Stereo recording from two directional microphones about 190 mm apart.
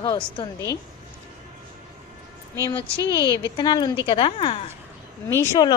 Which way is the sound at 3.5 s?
25° left (ahead or behind).